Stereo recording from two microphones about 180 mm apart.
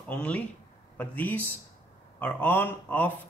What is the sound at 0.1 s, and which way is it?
Speech, 5° left (ahead or behind).